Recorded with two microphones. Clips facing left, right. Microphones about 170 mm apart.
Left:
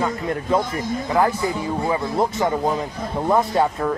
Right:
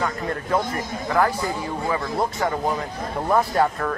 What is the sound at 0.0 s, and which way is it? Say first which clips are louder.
Speech: left 3 dB; 20° left (ahead or behind).